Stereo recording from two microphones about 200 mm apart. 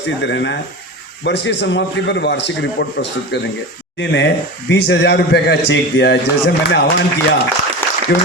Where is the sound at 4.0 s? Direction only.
65° left (ahead or behind).